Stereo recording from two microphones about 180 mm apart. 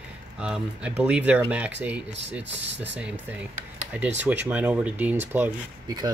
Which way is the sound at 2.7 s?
10° right (ahead or behind).